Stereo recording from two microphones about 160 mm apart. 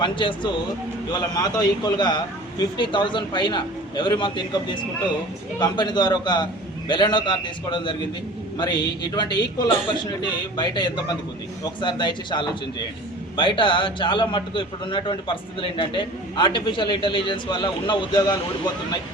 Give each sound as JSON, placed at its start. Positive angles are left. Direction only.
{"t": 0.0, "sound": "a man's voice", "side_deg": 30}